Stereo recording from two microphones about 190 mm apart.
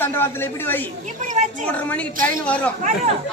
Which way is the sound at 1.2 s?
40° right (ahead or behind).